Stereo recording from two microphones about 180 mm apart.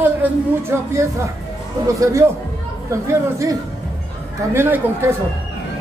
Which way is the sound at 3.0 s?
15° right (ahead or behind).